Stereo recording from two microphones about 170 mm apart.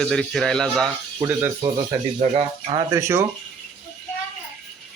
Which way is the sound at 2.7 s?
15° right (ahead or behind).